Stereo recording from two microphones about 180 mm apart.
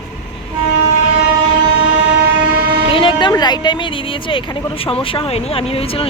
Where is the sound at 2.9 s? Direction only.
30° left (ahead or behind).